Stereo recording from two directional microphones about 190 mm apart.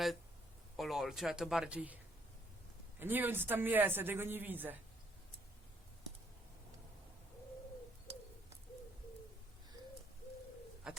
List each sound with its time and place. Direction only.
0.8 s speech: centre (ahead or behind)
3.0 s speech: 10° right (ahead or behind)
10.8 s speech: 5° right (ahead or behind)